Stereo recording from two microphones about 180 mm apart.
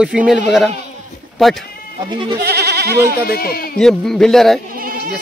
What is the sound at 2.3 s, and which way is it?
Goat, 65° right (ahead or behind).